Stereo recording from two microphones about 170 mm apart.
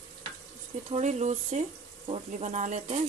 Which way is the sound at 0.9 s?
40° right (ahead or behind).